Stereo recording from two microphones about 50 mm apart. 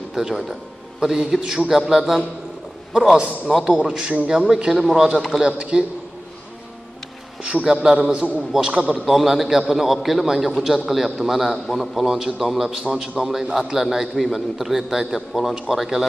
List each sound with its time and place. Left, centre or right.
0.1 s a man's voice: centre
3.2 s a man's voice: right
7.6 s a man's voice: centre
9.0 s a man's voice: centre